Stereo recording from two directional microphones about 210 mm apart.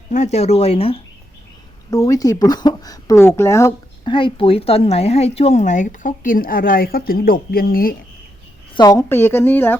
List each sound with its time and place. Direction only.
0.1 s speech: 35° left (ahead or behind)
1.9 s speech: 15° left (ahead or behind); by 7.9 s 45° left (ahead or behind)
8.7 s a woman's voice: 15° left (ahead or behind)